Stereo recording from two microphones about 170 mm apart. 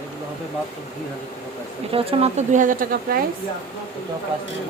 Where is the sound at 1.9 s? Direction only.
35° right (ahead or behind); by 3.2 s 60° right (ahead or behind).